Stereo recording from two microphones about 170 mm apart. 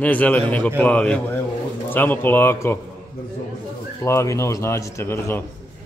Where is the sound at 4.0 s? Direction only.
15° left (ahead or behind).